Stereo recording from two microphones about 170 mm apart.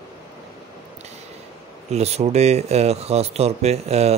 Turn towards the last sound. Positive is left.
turn(degrees=-40)  # may be behind; listen again after turning